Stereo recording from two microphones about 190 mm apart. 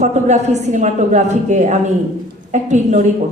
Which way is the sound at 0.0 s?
35° right (ahead or behind).